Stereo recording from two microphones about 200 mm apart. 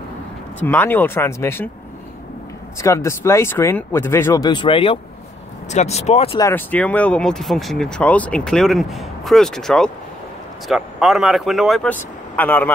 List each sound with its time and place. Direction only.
0.6 s speech: 10° left (ahead or behind)
2.8 s speech: 15° left (ahead or behind); by 6.4 s 30° left (ahead or behind)
6.4 s speech: 10° left (ahead or behind)